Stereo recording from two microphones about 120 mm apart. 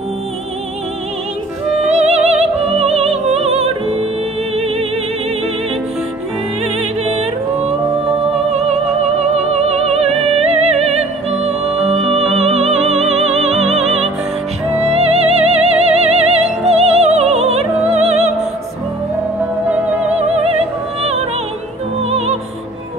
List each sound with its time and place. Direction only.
1.9 s music: 65° right (ahead or behind)
8.0 s music: 60° right (ahead or behind)
19.7 s music: 10° right (ahead or behind)
22.1 s music: 65° right (ahead or behind)